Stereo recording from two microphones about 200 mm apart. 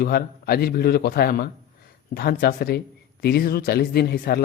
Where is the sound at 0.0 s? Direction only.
50° left (ahead or behind).